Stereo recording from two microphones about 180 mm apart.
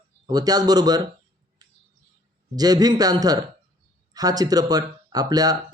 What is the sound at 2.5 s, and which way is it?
A man's voice, 20° right (ahead or behind).